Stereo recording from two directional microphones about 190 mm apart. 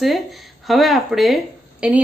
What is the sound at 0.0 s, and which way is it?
Speech, centre (ahead or behind).